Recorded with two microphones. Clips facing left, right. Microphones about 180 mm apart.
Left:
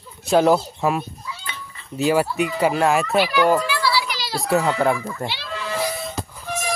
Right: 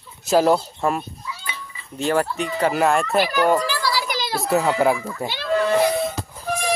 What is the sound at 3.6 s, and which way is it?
Children playing, 40° right (ahead or behind).